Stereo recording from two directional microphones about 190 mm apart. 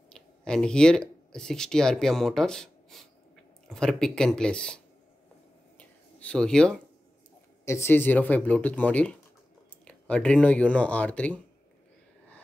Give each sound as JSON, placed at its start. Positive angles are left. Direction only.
{"t": 0.1, "sound": "speech", "side_deg": 5}
{"t": 5.8, "sound": "a sound", "side_deg": 5}
{"t": 7.6, "sound": "speech", "side_deg": 15}